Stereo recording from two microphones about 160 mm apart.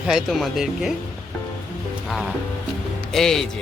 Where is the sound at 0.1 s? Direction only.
Centre (ahead or behind).